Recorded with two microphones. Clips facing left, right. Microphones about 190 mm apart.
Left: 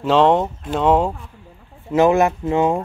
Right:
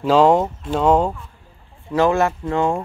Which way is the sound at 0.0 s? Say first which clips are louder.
Right 1 dB; centre (ahead or behind).